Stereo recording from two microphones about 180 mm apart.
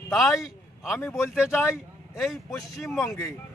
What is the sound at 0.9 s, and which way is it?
A man's voice, 15° left (ahead or behind).